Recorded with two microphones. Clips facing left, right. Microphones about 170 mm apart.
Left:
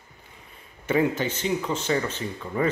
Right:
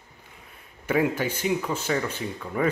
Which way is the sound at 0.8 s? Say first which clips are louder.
Left 1 dB; 10° right (ahead or behind).